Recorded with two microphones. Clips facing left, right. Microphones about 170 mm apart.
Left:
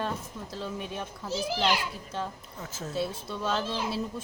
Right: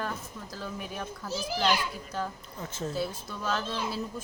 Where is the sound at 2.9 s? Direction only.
25° left (ahead or behind).